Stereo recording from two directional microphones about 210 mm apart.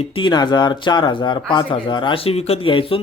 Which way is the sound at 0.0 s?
20° left (ahead or behind).